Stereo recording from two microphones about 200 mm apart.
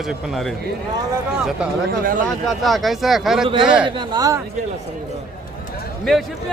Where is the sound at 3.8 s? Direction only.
20° right (ahead or behind).